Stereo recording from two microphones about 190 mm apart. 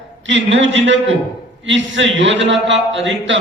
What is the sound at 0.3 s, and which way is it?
A man's voice, 75° right (ahead or behind).